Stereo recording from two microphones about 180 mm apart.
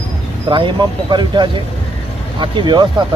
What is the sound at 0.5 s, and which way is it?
Speech, 25° right (ahead or behind).